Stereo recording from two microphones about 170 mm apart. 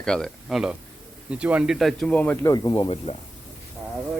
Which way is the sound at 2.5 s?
25° left (ahead or behind).